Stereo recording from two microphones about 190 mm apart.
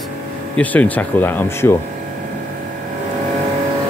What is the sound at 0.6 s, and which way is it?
Speech, 10° left (ahead or behind).